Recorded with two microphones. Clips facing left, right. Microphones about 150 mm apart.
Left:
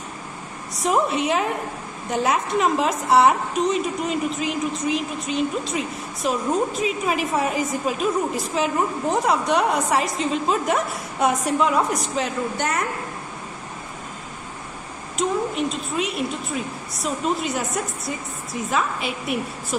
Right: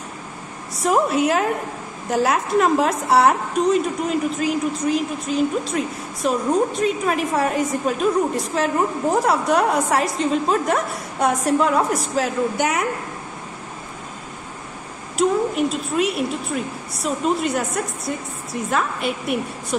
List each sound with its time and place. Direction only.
0.7 s a woman's voice: centre (ahead or behind)
15.1 s a woman's voice: centre (ahead or behind)